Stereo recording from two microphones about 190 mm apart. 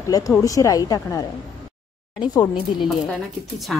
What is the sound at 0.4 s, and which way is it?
Speech, 15° left (ahead or behind).